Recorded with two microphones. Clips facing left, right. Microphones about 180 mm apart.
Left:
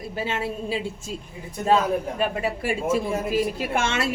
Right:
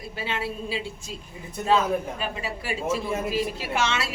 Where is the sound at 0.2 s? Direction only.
45° left (ahead or behind).